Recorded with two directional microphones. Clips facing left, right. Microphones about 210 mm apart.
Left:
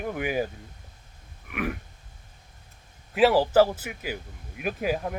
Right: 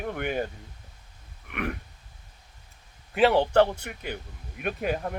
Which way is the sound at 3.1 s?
Centre (ahead or behind).